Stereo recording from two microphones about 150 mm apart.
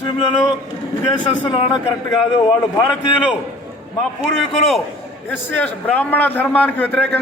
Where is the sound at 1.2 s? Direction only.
30° left (ahead or behind).